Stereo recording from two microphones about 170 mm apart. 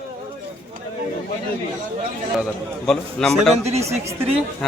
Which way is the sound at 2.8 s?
Centre (ahead or behind).